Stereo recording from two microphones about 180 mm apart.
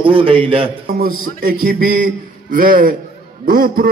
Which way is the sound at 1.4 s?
55° right (ahead or behind).